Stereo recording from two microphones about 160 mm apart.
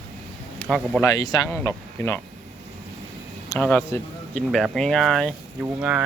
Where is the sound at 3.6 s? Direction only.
10° left (ahead or behind).